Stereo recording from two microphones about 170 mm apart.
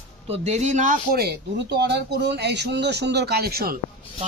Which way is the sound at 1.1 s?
80° right.